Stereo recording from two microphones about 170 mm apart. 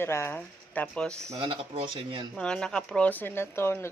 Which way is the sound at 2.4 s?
5° left (ahead or behind).